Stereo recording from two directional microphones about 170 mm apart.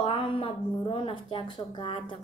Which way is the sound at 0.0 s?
30° left (ahead or behind).